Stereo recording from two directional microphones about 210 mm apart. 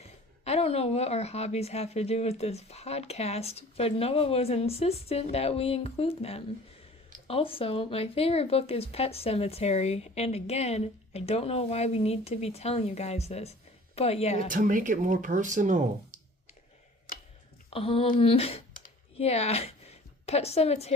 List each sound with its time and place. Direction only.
0.4 s speech: 30° left (ahead or behind)
14.5 s speech: 40° right (ahead or behind)
17.7 s a woman's voice: 25° left (ahead or behind)